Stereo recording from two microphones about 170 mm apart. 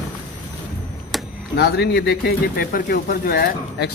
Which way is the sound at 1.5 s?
75° left (ahead or behind).